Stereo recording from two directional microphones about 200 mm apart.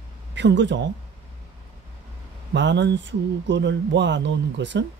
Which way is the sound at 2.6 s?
65° right (ahead or behind).